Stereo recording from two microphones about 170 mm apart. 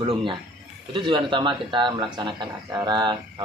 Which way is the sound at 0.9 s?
25° right (ahead or behind).